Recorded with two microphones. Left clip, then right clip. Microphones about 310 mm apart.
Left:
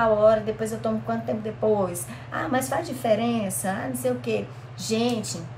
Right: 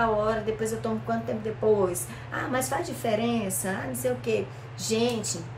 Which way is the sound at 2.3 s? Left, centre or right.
Centre.